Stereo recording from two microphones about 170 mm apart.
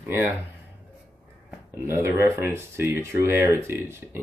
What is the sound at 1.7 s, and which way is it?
Speech, 15° right (ahead or behind).